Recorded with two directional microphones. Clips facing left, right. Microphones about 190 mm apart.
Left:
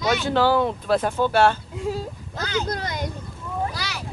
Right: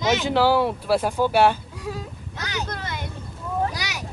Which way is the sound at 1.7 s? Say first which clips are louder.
Left 5 dB; 25° left (ahead or behind).